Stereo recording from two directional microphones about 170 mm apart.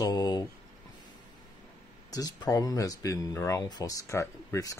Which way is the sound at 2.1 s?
20° left (ahead or behind).